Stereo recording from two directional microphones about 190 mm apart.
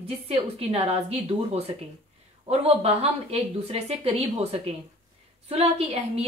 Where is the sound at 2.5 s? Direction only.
35° right (ahead or behind).